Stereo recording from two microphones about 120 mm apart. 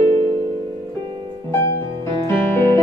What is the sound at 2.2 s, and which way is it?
Music, 20° left (ahead or behind).